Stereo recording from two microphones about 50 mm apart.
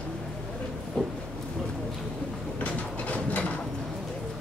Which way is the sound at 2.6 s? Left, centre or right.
Left.